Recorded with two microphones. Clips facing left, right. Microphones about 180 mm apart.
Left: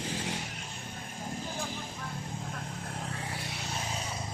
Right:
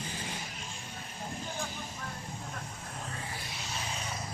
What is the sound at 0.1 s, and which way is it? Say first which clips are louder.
Vehicle: left 5 dB; 75° left (ahead or behind).